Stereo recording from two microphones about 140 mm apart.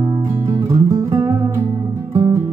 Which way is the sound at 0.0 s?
25° right (ahead or behind).